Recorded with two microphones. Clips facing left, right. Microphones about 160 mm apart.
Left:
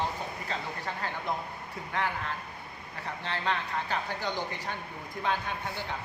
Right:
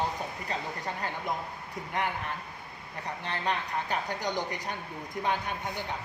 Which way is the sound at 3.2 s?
15° right (ahead or behind).